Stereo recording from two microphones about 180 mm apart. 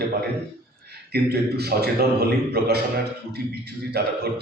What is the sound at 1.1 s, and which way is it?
A man's voice, 60° right (ahead or behind).